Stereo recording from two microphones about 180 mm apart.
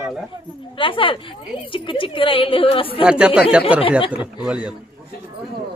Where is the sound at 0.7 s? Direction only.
30° left (ahead or behind).